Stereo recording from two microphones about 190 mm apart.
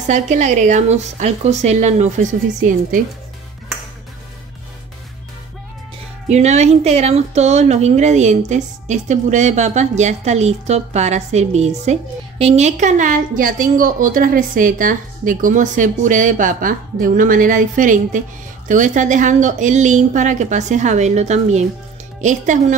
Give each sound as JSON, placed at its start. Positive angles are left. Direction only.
{"t": 0.0, "sound": "a woman's voice", "side_deg": -40}
{"t": 6.2, "sound": "a woman's voice", "side_deg": -35}